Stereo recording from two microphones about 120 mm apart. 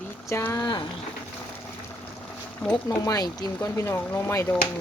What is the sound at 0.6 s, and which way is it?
Speech, 40° left (ahead or behind).